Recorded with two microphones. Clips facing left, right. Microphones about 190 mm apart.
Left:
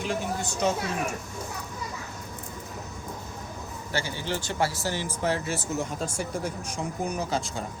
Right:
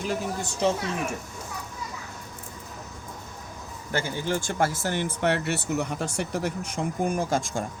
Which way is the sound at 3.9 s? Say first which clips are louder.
Right 3 dB; 50° right (ahead or behind).